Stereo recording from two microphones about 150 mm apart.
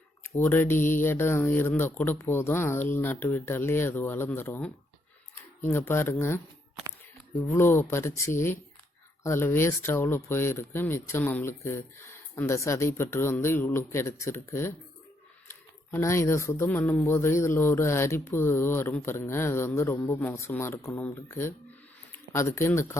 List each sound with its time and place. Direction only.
0.2 s mantra: 15° left (ahead or behind)
1.0 s speech: 15° left (ahead or behind)
7.4 s speech: 15° left (ahead or behind)